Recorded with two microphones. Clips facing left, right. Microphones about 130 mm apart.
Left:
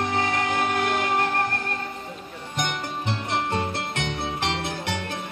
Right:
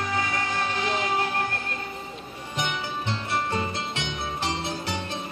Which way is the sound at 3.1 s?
60° left (ahead or behind).